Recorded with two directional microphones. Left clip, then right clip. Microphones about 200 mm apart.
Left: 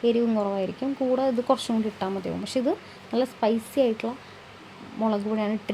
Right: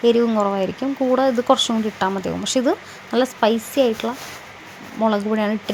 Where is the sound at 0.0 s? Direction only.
15° right (ahead or behind).